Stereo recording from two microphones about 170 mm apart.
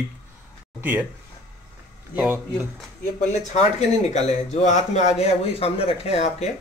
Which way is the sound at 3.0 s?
45° left (ahead or behind).